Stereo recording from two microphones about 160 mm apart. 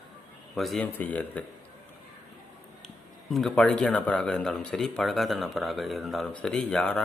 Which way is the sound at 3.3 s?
5° left (ahead or behind).